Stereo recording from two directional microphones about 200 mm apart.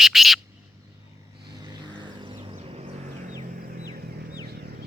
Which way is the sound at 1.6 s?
20° right (ahead or behind).